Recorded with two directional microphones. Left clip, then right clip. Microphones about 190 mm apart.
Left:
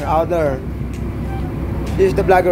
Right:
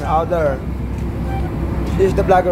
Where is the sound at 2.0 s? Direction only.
20° left (ahead or behind).